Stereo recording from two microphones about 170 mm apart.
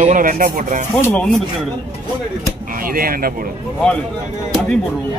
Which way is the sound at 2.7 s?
55° right (ahead or behind).